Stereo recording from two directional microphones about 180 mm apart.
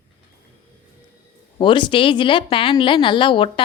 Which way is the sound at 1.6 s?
25° left (ahead or behind).